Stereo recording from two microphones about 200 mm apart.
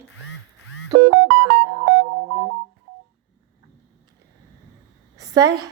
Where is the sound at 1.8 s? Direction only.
60° right (ahead or behind).